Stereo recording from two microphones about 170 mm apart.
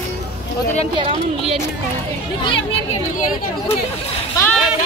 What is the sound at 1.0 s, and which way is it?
Speech, 35° right (ahead or behind).